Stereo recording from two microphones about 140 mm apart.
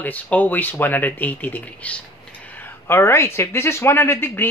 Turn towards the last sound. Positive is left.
turn(degrees=15)  # may be behind; listen again after turning